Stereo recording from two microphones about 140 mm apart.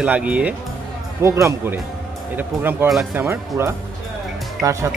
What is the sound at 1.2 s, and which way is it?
Speech, 20° right (ahead or behind).